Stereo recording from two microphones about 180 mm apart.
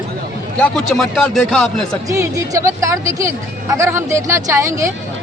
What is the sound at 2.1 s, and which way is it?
A woman's voice, 20° right (ahead or behind).